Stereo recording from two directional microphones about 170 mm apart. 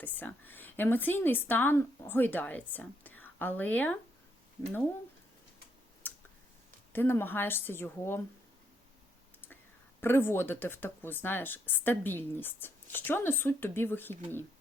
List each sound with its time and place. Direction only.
0.0 s speech: 10° left (ahead or behind)
6.0 s a sound: 10° left (ahead or behind)
6.9 s speech: 15° left (ahead or behind)
10.0 s speech: 15° left (ahead or behind)